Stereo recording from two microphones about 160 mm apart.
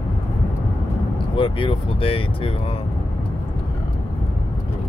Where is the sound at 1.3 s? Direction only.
30° left (ahead or behind).